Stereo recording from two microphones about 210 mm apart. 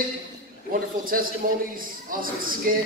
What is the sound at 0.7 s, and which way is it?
A man's voice, 40° right (ahead or behind).